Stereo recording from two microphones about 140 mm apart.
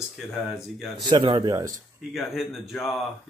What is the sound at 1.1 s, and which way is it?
Speech, 35° right (ahead or behind).